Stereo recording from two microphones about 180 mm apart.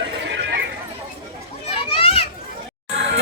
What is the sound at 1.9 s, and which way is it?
Children playing, 30° left (ahead or behind).